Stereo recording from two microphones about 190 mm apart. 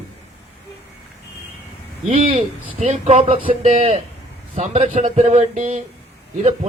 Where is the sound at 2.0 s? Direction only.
35° right (ahead or behind).